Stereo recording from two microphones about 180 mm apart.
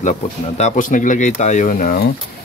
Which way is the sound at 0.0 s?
40° left (ahead or behind).